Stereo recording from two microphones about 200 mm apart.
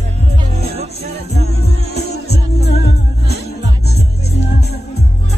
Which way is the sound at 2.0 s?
55° left (ahead or behind).